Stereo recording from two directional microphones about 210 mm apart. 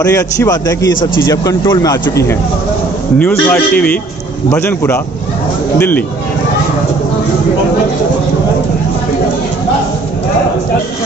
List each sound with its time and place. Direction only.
0.0 s speech: 15° left (ahead or behind)